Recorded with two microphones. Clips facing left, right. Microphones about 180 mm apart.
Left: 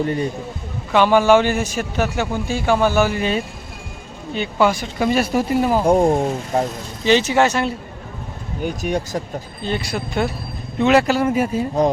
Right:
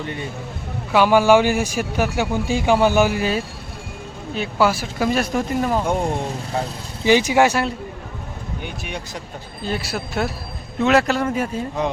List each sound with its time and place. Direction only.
0.0 s speech: 40° left (ahead or behind)
0.9 s a man's voice: 10° right (ahead or behind); by 5.8 s 5° left (ahead or behind)
5.8 s speech: 35° left (ahead or behind)
7.0 s a man's voice: 10° right (ahead or behind)
8.6 s speech: 40° left (ahead or behind)
9.6 s speech: 5° right (ahead or behind)
11.8 s speech: 40° left (ahead or behind)